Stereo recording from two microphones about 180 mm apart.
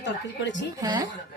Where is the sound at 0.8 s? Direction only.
20° right (ahead or behind).